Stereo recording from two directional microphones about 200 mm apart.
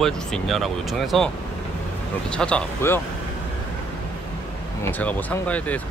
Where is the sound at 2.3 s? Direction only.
5° left (ahead or behind).